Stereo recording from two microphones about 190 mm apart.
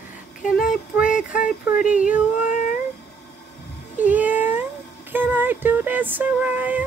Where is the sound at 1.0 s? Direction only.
45° left (ahead or behind).